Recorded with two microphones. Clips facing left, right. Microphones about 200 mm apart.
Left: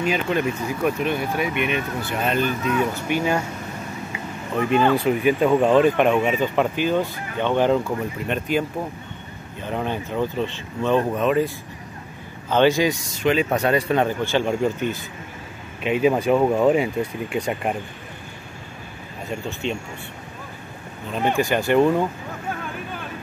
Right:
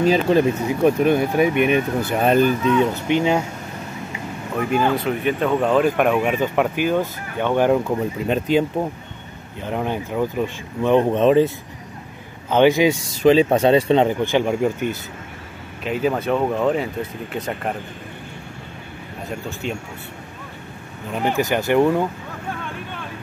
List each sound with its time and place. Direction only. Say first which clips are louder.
0.0 s speech: right 6 dB; 35° right (ahead or behind)
1.0 s speech: right 7 dB; 45° right (ahead or behind)
2.6 s speech: right 4 dB; 25° right (ahead or behind)
4.6 s speech: left 1 dB; centre (ahead or behind)
5.8 s speech: left 1 dB; 5° right (ahead or behind)
9.6 s speech: right 2 dB; 15° right (ahead or behind)
12.4 s speech: right 3 dB; 15° right (ahead or behind)
15.8 s speech: left 2 dB; 5° left (ahead or behind)
19.6 s speech: left 1 dB; 10° right (ahead or behind)
21.1 s speech: even; 5° right (ahead or behind)
21.4 s speech: right 1 dB; 20° right (ahead or behind)